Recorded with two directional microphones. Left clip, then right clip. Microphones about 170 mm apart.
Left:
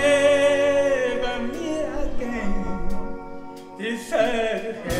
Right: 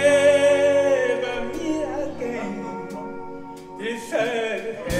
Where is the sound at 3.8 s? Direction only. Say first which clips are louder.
Left 2 dB; 50° left (ahead or behind).